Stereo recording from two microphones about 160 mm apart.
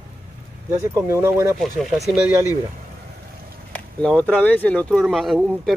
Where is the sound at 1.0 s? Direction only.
15° right (ahead or behind).